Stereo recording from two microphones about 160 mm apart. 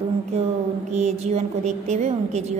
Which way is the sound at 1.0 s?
45° right (ahead or behind).